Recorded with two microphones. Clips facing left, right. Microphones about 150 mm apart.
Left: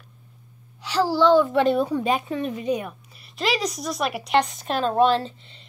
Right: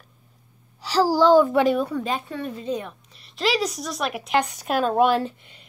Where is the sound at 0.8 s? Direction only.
35° right (ahead or behind).